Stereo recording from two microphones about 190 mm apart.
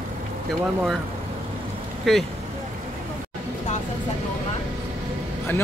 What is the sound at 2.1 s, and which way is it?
Speech, centre (ahead or behind).